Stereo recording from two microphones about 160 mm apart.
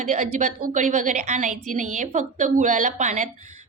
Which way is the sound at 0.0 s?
45° right (ahead or behind).